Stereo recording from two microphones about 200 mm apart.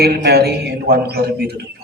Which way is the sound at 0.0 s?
50° right (ahead or behind).